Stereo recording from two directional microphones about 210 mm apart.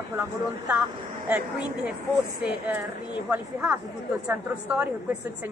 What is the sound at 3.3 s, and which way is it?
A woman's voice, 5° right (ahead or behind).